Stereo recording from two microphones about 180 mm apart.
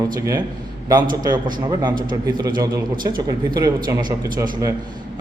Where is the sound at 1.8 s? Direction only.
20° right (ahead or behind).